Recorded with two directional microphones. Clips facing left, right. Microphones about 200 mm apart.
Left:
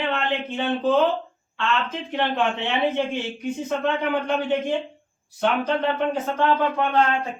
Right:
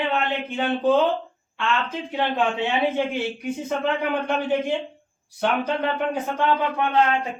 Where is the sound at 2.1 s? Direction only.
10° right (ahead or behind).